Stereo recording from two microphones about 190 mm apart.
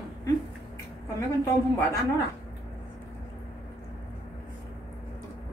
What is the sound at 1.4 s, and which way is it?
Speech, 15° left (ahead or behind).